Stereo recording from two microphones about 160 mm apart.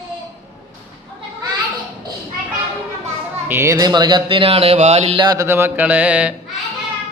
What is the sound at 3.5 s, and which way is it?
Speech, 15° right (ahead or behind).